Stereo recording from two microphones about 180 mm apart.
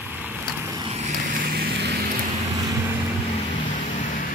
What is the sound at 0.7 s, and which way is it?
Vehicle, 35° right (ahead or behind).